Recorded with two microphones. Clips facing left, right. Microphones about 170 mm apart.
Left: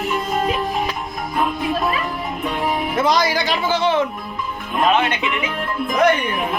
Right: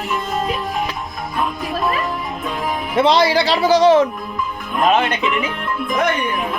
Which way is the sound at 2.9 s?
30° right (ahead or behind).